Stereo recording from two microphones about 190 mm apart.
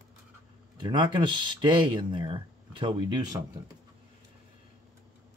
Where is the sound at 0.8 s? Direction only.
25° right (ahead or behind).